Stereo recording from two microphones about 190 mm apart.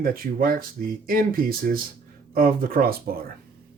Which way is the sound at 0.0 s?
50° right (ahead or behind).